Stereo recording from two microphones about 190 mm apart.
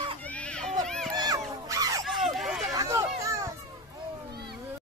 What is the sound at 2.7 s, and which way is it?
Children playing, 15° right (ahead or behind).